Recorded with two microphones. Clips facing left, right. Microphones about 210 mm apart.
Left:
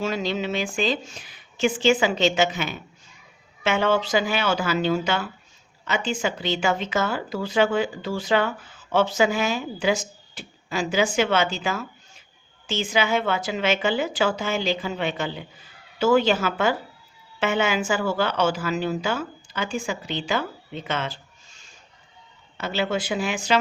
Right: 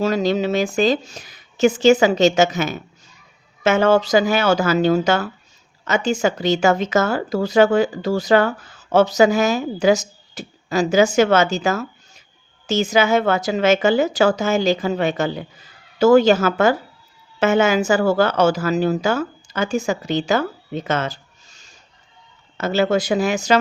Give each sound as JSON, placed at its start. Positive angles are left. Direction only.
{"t": 0.0, "sound": "speech", "side_deg": -40}